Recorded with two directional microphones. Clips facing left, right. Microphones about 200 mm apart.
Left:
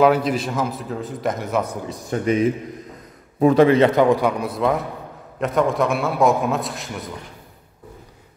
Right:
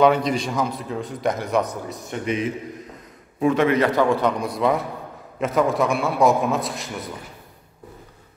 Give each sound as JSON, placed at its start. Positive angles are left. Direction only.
{"t": 0.0, "sound": "a man's voice", "side_deg": 5}
{"t": 1.9, "sound": "a man's voice", "side_deg": 35}